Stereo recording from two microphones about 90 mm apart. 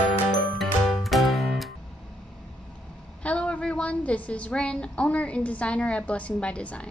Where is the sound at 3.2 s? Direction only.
15° left (ahead or behind).